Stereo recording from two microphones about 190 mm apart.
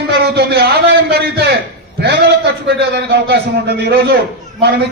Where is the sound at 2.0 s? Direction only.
65° right (ahead or behind).